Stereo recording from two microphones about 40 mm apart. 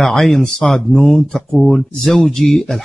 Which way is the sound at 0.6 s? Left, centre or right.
Centre.